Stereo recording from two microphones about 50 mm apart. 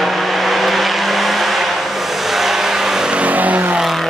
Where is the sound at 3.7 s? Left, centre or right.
Centre.